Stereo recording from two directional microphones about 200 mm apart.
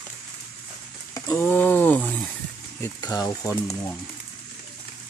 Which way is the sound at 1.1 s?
15° left (ahead or behind).